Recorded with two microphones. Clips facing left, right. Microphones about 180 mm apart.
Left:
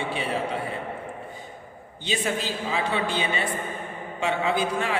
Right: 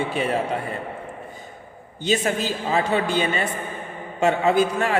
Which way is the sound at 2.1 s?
45° right (ahead or behind).